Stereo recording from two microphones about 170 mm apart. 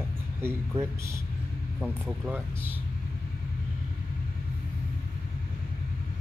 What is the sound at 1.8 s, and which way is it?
Speech, centre (ahead or behind).